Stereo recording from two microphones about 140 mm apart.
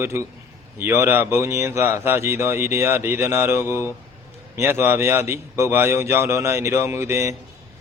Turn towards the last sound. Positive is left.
turn(degrees=-20)  # may be behind; listen again after turning